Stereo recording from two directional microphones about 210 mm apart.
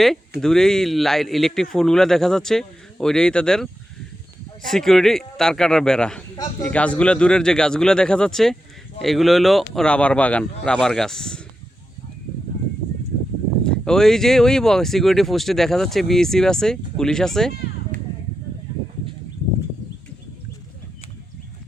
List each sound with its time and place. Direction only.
0.0 s speech: centre (ahead or behind)
13.7 s speech: 5° left (ahead or behind)